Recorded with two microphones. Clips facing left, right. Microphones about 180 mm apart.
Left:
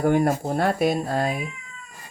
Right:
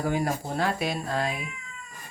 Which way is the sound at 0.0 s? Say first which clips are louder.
Left 7 dB; 55° left (ahead or behind).